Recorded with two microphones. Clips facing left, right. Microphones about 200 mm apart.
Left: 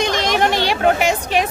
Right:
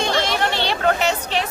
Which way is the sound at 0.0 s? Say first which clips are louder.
Left 3 dB; 15° left (ahead or behind).